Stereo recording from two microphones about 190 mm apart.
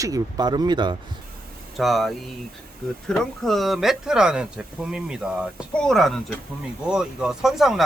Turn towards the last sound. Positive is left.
turn(degrees=0)  # may be behind; listen again after turning